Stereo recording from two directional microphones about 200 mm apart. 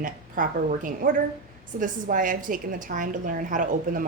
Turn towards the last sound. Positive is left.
turn(degrees=-40)  # may be behind; listen again after turning